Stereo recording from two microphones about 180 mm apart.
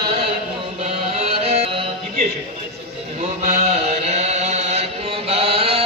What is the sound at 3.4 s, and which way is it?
Chant, 35° right (ahead or behind).